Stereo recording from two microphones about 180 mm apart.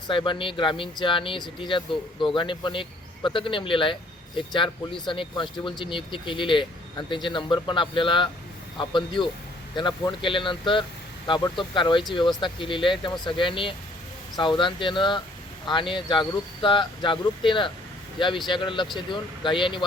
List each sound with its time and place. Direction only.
0.1 s speech: 30° left (ahead or behind)